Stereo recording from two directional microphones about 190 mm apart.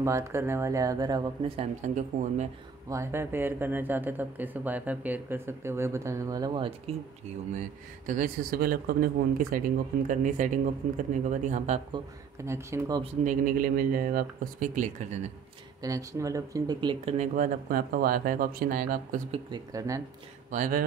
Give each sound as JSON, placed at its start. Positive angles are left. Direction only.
{"t": 0.0, "sound": "speech", "side_deg": -15}
{"t": 2.1, "sound": "speech", "side_deg": -40}
{"t": 2.9, "sound": "speech", "side_deg": -15}
{"t": 8.1, "sound": "speech", "side_deg": -50}
{"t": 11.9, "sound": "speech", "side_deg": -15}
{"t": 13.0, "sound": "speech", "side_deg": -40}
{"t": 15.8, "sound": "speech", "side_deg": -15}
{"t": 17.2, "sound": "speech", "side_deg": -45}
{"t": 19.3, "sound": "speech", "side_deg": -20}
{"t": 20.5, "sound": "speech", "side_deg": -45}